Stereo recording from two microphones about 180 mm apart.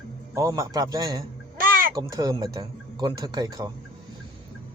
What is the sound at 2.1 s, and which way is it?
A man's voice, 20° right (ahead or behind).